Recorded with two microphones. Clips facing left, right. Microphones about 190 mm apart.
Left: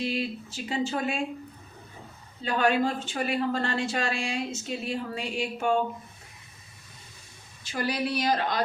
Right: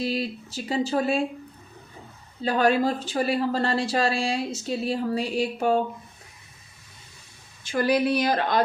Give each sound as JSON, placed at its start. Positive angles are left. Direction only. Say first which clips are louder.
{"t": 0.0, "sound": "speech", "louder": "right 2 dB", "side_deg": -40}
{"t": 2.4, "sound": "speech", "louder": "right 3 dB", "side_deg": -35}
{"t": 7.6, "sound": "speech", "louder": "right 7 dB", "side_deg": -55}